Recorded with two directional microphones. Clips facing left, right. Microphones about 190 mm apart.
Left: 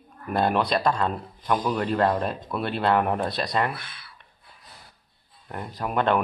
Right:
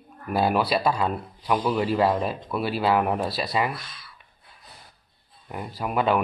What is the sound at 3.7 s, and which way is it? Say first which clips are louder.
Speech: right 1 dB; 60° left (ahead or behind).